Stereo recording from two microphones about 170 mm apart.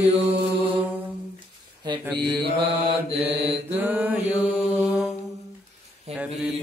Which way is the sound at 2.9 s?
35° right (ahead or behind).